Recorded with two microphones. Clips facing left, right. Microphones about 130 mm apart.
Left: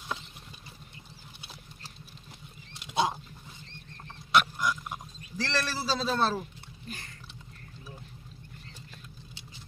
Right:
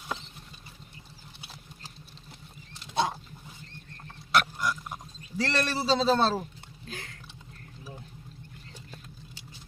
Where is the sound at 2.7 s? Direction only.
5° left (ahead or behind).